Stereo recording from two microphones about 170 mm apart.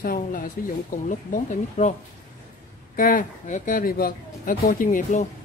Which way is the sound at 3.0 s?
55° left (ahead or behind).